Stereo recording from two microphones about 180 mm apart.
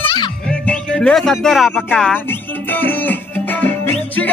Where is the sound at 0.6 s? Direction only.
5° left (ahead or behind).